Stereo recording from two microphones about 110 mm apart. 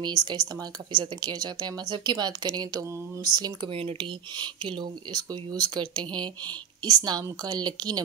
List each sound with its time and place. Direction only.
0.0 s speech: 40° right (ahead or behind)
3.7 s speech: 55° right (ahead or behind)
4.6 s speech: 45° right (ahead or behind)